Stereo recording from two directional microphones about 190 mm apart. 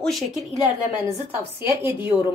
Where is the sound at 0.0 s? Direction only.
Centre (ahead or behind).